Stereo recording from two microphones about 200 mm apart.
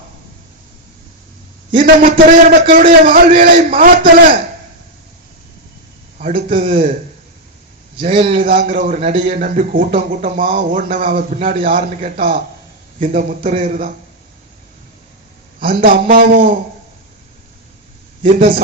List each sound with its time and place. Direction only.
1.8 s a man's voice: 45° right (ahead or behind)
6.1 s a man's voice: 40° right (ahead or behind)
8.1 s a man's voice: 25° right (ahead or behind)
8.4 s a man's voice: 45° right (ahead or behind)
15.6 s a man's voice: 45° right (ahead or behind)
18.2 s a man's voice: 45° right (ahead or behind)